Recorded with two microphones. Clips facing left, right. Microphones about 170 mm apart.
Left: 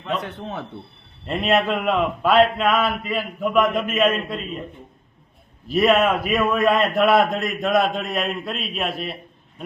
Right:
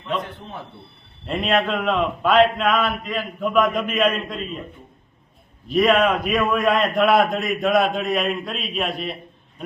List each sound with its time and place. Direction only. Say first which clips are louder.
0.2 s a man's voice: left 2 dB; 75° left (ahead or behind)
1.3 s a man's voice: left 1 dB; 5° left (ahead or behind)
5.6 s a man's voice: even; 5° left (ahead or behind)